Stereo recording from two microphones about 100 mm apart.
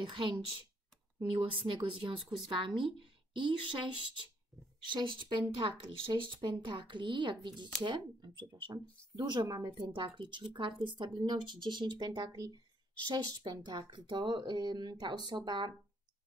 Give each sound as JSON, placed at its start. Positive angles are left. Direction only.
{"t": 0.0, "sound": "speech", "side_deg": -55}
{"t": 1.4, "sound": "speech", "side_deg": -60}